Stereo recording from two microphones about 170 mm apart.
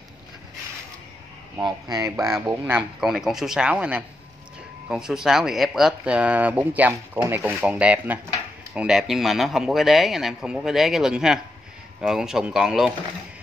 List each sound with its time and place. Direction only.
1.6 s speech: 20° right (ahead or behind)
2.4 s speech: 10° right (ahead or behind)